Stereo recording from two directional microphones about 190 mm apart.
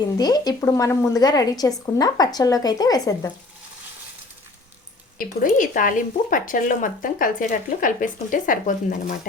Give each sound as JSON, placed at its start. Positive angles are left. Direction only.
{"t": 0.0, "sound": "a woman's voice", "side_deg": 20}
{"t": 5.1, "sound": "speech", "side_deg": 45}